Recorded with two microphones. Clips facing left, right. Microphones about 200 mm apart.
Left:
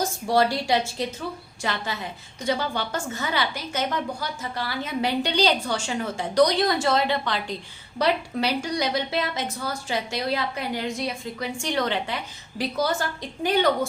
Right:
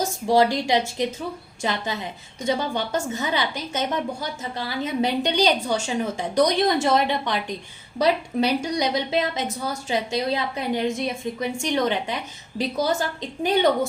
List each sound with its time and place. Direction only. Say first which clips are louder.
0.3 s a woman's voice: right 2 dB; 20° right (ahead or behind)